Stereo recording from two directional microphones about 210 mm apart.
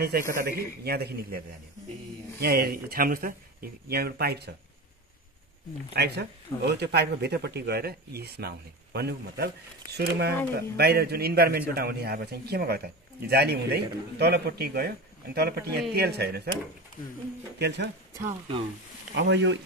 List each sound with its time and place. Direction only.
0.4 s a man's voice: 50° right (ahead or behind)
2.4 s a man's voice: 45° right (ahead or behind)
5.9 s a man's voice: 50° right (ahead or behind)
17.6 s a man's voice: 50° right (ahead or behind)
19.1 s speech: 60° right (ahead or behind)